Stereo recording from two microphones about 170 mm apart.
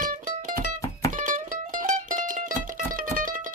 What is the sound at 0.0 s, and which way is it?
Music, 50° right (ahead or behind).